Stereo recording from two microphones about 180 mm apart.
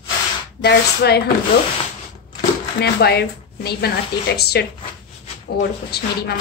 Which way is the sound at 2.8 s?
65° left (ahead or behind).